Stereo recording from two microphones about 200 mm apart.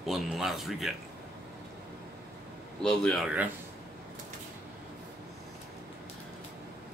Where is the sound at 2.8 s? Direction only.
Centre (ahead or behind).